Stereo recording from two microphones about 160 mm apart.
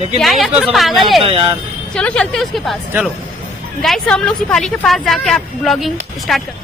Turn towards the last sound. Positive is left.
turn(degrees=0)  # may be behind; listen again after turning